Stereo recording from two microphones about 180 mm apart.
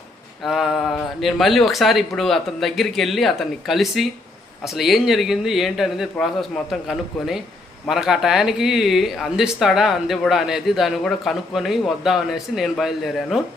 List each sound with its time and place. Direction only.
0.4 s speech: centre (ahead or behind)